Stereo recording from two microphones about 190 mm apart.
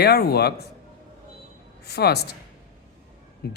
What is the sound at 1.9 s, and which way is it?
Speech, 55° left (ahead or behind).